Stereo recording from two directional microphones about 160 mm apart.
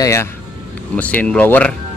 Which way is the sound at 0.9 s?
10° left (ahead or behind).